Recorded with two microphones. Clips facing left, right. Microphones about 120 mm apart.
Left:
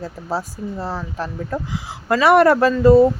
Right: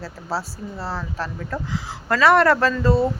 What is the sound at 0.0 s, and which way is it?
Speech, 20° left (ahead or behind).